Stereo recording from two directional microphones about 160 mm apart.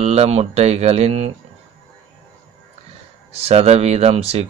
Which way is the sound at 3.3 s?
40° right (ahead or behind).